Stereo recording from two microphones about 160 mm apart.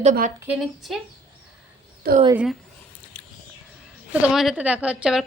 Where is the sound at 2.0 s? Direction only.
70° right (ahead or behind).